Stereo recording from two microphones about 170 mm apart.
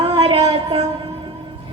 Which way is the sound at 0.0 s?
30° right (ahead or behind).